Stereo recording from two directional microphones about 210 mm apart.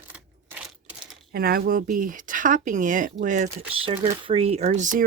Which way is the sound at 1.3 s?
45° right (ahead or behind).